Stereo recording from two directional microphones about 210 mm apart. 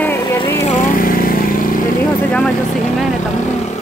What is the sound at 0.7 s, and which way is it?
Vehicle, 40° left (ahead or behind).